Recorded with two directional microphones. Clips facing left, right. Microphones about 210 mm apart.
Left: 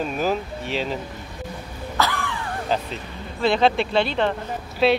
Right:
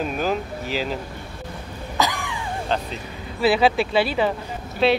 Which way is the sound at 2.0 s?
15° right (ahead or behind).